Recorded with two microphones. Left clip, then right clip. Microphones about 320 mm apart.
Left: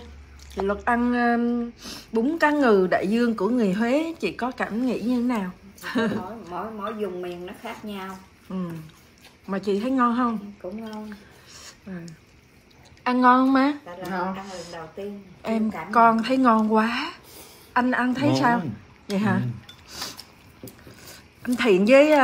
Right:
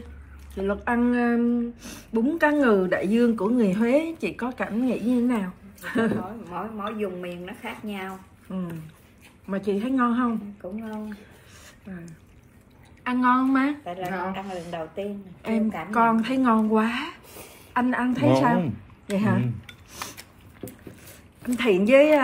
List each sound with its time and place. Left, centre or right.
0.6 s a woman's voice: centre
9.5 s speech: centre
10.9 s a sound: centre
13.0 s a woman's voice: centre
14.0 s speech: centre
15.4 s speech: centre
21.4 s speech: centre